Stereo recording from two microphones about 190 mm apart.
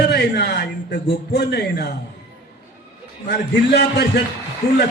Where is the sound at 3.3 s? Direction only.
60° left (ahead or behind).